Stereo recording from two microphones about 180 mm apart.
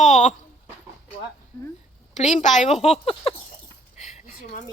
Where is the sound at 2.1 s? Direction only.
40° left (ahead or behind).